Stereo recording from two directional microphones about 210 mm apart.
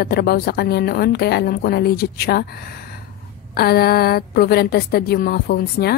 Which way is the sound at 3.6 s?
50° left (ahead or behind).